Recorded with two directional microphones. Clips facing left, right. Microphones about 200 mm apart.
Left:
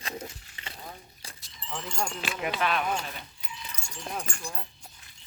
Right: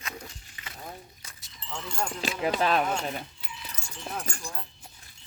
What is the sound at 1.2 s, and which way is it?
Dog, 30° left (ahead or behind).